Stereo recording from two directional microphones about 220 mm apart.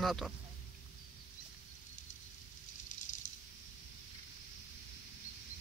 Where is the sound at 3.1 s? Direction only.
35° left (ahead or behind).